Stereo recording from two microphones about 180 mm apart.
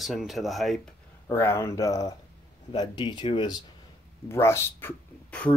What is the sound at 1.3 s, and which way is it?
Speech, 15° left (ahead or behind).